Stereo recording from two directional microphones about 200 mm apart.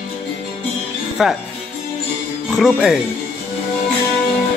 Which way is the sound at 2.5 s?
Centre (ahead or behind).